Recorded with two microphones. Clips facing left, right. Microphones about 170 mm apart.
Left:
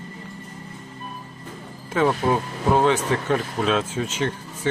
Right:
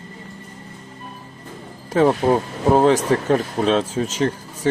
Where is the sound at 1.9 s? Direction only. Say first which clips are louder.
Right 4 dB; 35° right (ahead or behind).